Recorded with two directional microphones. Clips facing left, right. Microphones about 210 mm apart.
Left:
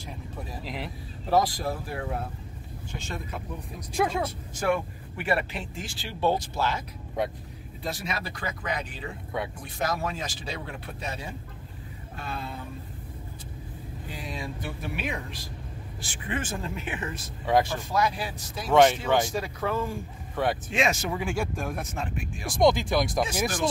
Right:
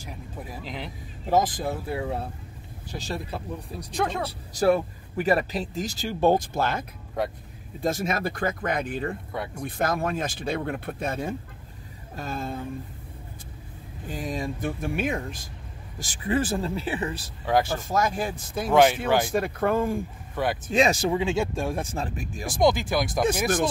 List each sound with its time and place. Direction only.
0.7 s speech: centre (ahead or behind)
1.2 s speech: 20° right (ahead or behind)
3.9 s speech: centre (ahead or behind)
4.3 s speech: 35° right (ahead or behind)
14.0 s speech: 45° right (ahead or behind)
17.7 s speech: 45° right (ahead or behind)
18.7 s speech: 5° right (ahead or behind)
19.3 s speech: 55° right (ahead or behind)
20.4 s speech: centre (ahead or behind)
20.7 s speech: 35° right (ahead or behind)
21.1 s speech: 20° right (ahead or behind); by 22.5 s 40° right (ahead or behind)
22.5 s speech: centre (ahead or behind)
23.4 s speech: 55° right (ahead or behind)